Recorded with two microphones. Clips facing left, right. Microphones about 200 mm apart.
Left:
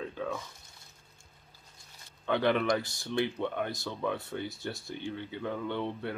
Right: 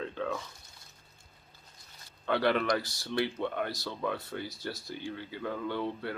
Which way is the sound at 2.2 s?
20° left (ahead or behind).